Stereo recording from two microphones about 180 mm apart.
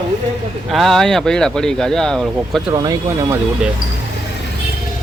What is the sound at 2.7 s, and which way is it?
Speech, 20° right (ahead or behind).